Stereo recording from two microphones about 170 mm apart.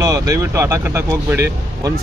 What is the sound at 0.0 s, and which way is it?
A man's voice, 20° right (ahead or behind).